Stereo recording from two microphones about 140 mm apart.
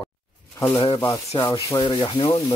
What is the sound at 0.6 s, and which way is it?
Speech, 35° left (ahead or behind).